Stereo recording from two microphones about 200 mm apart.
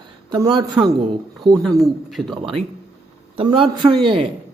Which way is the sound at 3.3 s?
25° right (ahead or behind).